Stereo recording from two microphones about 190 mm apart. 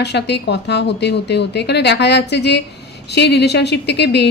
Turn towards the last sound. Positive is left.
turn(degrees=65)  # may be behind; listen again after turning